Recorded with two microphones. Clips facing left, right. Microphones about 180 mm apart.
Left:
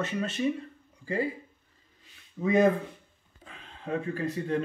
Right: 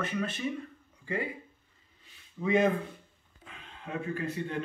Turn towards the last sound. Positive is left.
turn(degrees=35)  # may be behind; listen again after turning